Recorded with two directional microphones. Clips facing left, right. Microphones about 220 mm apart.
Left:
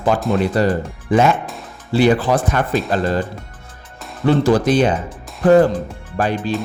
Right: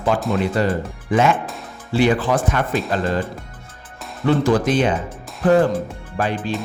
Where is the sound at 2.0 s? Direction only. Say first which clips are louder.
Left 3 dB; 35° left (ahead or behind).